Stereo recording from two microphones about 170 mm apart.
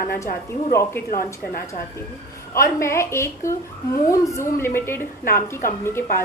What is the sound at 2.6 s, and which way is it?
A woman's voice, 15° left (ahead or behind).